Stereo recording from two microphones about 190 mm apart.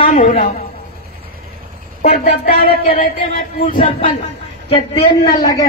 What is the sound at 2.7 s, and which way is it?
Speech, 30° left (ahead or behind).